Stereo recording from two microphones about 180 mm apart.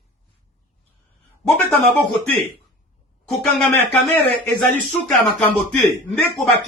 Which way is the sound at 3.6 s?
10° left (ahead or behind).